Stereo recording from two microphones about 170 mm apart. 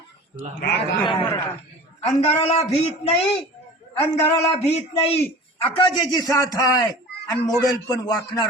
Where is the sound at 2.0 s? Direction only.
40° left (ahead or behind).